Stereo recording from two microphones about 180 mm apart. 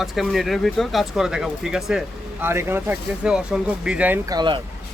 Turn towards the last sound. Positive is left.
turn(degrees=-25)  # may be behind; listen again after turning